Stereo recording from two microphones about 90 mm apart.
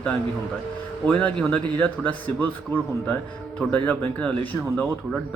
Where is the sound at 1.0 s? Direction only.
15° left (ahead or behind).